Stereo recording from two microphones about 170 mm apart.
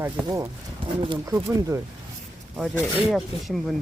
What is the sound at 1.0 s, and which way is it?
Speech, 25° right (ahead or behind).